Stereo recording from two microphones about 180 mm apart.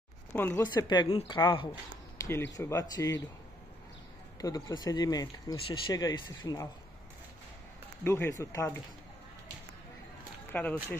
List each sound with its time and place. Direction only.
0.3 s speech: 10° left (ahead or behind); by 1.7 s 25° left (ahead or behind)
2.2 s a sound: 20° left (ahead or behind)
2.5 s speech: 20° left (ahead or behind)
4.4 s speech: 20° left (ahead or behind)
8.0 s speech: 15° left (ahead or behind)
10.5 s speech: 10° left (ahead or behind)